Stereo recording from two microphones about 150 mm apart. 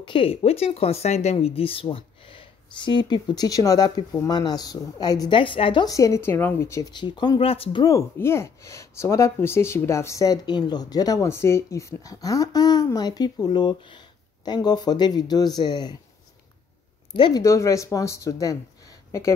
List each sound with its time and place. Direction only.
0.0 s speech: 35° left (ahead or behind); by 6.9 s 20° left (ahead or behind)
6.9 s speech: 30° left (ahead or behind)
7.8 s speech: 20° left (ahead or behind)
17.1 s speech: 35° left (ahead or behind)
17.4 s speech: 20° left (ahead or behind)